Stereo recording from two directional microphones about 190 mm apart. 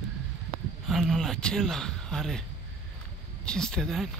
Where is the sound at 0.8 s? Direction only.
Centre (ahead or behind).